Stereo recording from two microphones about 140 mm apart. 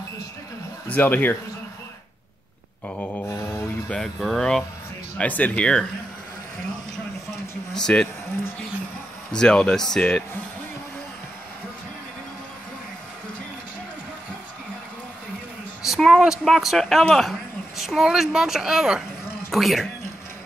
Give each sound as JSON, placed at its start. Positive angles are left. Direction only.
{"t": 0.8, "sound": "speech", "side_deg": 10}
{"t": 2.9, "sound": "mantra", "side_deg": 10}
{"t": 3.9, "sound": "speech", "side_deg": 0}
{"t": 7.7, "sound": "speech", "side_deg": 5}
{"t": 9.3, "sound": "speech", "side_deg": 5}
{"t": 15.8, "sound": "speech", "side_deg": 0}